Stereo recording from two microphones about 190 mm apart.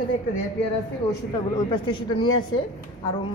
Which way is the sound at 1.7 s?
25° left (ahead or behind).